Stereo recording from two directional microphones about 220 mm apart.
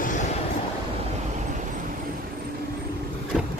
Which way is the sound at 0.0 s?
35° left (ahead or behind).